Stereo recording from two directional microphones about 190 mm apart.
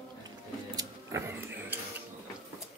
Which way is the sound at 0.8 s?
15° right (ahead or behind).